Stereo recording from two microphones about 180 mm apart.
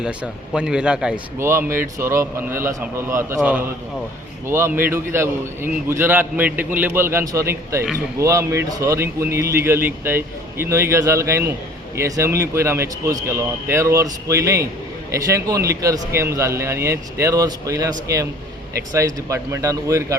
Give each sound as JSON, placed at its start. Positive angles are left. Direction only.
{"t": 0.0, "sound": "a man's voice", "side_deg": -5}
{"t": 18.9, "sound": "a man's voice", "side_deg": -15}